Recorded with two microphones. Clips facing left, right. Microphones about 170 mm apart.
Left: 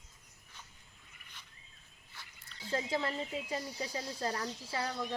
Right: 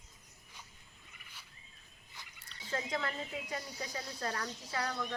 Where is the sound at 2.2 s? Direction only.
15° right (ahead or behind).